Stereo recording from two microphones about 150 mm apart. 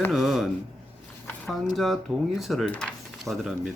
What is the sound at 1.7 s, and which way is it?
Speech, centre (ahead or behind).